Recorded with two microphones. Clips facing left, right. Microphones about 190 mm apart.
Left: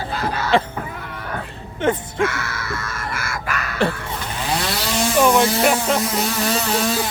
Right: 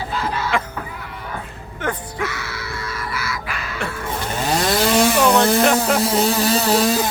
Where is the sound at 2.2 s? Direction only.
50° left (ahead or behind).